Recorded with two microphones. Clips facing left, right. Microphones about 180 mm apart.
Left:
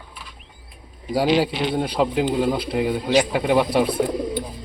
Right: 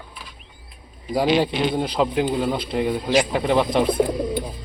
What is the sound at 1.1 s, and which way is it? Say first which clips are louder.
Speech: even; centre (ahead or behind).